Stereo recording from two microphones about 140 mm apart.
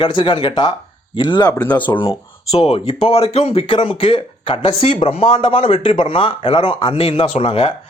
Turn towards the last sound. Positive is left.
turn(degrees=40)  # may be behind; listen again after turning